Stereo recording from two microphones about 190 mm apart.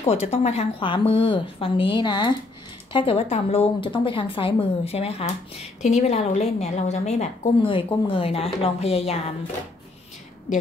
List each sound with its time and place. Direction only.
0.0 s a woman's voice: 35° left (ahead or behind)